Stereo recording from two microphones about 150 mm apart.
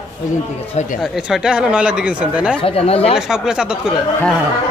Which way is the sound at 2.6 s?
40° left (ahead or behind).